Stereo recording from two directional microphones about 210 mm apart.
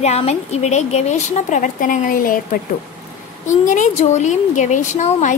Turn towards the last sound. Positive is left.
turn(degrees=35)  # may be behind; listen again after turning